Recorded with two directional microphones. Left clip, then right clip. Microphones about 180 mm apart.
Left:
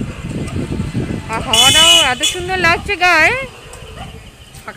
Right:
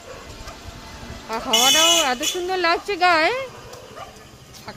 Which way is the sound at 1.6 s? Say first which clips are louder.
Left 7 dB; centre (ahead or behind).